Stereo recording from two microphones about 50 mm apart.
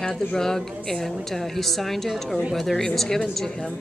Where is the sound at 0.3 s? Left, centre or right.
Centre.